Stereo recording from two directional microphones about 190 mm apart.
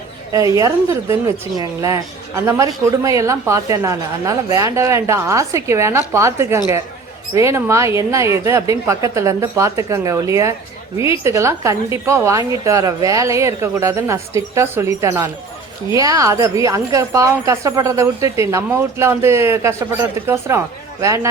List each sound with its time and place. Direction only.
0.5 s speech: 15° right (ahead or behind)